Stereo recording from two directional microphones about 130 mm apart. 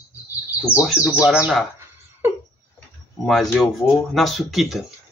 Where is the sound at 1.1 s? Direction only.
5° right (ahead or behind).